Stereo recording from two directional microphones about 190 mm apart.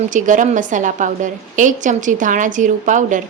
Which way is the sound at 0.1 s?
40° right (ahead or behind).